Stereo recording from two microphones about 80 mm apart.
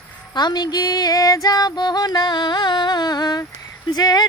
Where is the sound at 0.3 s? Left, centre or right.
Left.